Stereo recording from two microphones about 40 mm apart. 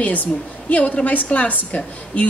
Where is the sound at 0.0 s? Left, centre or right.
Left.